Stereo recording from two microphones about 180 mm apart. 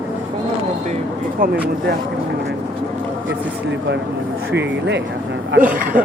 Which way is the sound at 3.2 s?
85° right.